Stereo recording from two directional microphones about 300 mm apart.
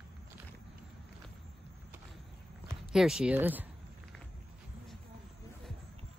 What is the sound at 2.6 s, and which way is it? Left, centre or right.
Speech, centre.